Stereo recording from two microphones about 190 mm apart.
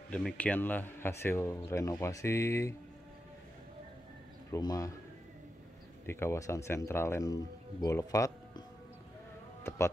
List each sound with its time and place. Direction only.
0.1 s a man's voice: 5° left (ahead or behind)
4.5 s speech: 20° left (ahead or behind)
6.0 s a man's voice: 15° left (ahead or behind)
9.6 s a sound: 10° left (ahead or behind)